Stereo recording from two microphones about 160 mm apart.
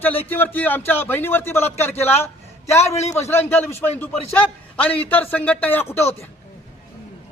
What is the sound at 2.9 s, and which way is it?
Speech, 40° left (ahead or behind).